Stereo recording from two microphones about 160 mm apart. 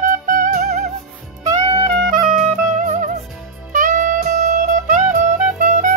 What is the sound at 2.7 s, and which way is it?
Music, 55° right (ahead or behind).